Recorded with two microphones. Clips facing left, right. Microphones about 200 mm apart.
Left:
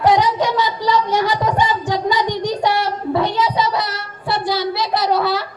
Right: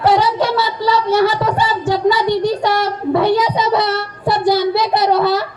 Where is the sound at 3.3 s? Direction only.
20° right (ahead or behind).